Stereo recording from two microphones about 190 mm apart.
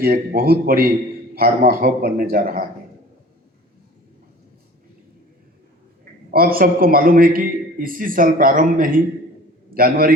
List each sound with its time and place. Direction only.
0.0 s a man's voice: 50° right (ahead or behind)
6.3 s a man's voice: 50° right (ahead or behind)